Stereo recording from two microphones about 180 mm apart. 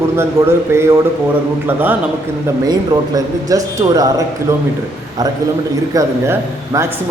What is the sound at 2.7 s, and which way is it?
A man's voice, 20° right (ahead or behind).